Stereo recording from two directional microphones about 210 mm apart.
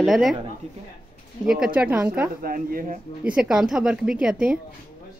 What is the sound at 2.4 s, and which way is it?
Speech, 45° right (ahead or behind).